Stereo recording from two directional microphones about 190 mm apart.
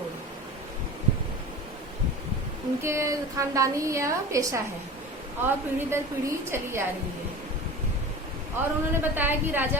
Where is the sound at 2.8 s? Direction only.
15° right (ahead or behind).